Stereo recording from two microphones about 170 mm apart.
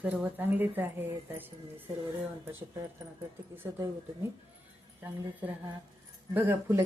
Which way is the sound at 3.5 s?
15° right (ahead or behind).